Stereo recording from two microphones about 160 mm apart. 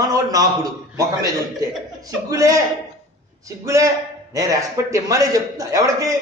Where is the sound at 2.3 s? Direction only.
20° right (ahead or behind).